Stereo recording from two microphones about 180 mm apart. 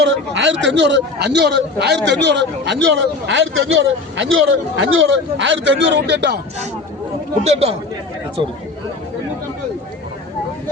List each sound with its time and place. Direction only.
0.0 s a man's voice: 85° right; by 6.4 s 70° right (ahead or behind)
7.4 s speech: 35° right (ahead or behind)